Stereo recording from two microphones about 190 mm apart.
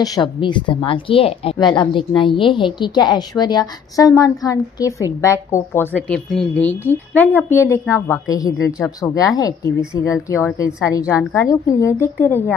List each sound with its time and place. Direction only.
0.0 s a woman's voice: 20° left (ahead or behind)